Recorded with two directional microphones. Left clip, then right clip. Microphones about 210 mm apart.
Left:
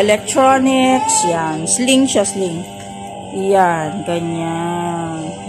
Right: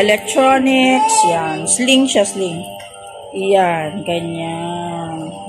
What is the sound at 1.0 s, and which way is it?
Speech, 10° right (ahead or behind).